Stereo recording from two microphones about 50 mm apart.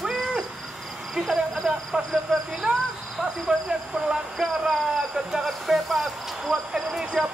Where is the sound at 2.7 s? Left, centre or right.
Centre.